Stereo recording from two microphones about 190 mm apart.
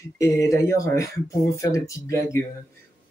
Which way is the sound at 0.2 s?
15° left (ahead or behind).